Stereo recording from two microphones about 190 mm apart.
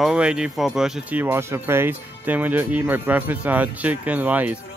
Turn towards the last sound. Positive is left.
turn(degrees=-10)  # may be behind; listen again after turning